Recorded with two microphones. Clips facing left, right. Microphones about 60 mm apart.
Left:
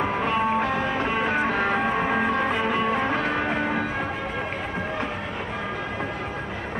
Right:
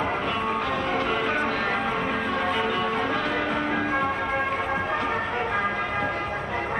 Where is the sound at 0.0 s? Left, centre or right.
Left.